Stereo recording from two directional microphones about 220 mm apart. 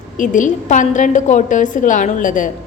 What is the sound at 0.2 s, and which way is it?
A woman's voice, 35° left (ahead or behind).